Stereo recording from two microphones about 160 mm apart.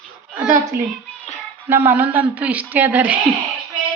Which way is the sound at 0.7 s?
75° right (ahead or behind).